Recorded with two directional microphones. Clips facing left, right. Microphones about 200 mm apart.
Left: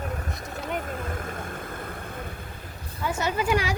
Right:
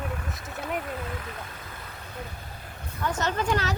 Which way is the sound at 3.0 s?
10° left (ahead or behind).